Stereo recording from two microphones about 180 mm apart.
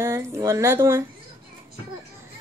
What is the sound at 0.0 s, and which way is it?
Speech, 15° right (ahead or behind).